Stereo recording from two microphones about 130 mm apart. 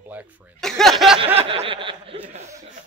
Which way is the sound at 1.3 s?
50° right (ahead or behind).